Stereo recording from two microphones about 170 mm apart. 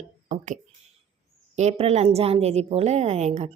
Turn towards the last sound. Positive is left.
turn(degrees=-40)  # may be behind; listen again after turning